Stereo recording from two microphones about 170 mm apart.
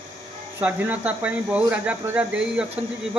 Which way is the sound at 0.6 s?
10° right (ahead or behind).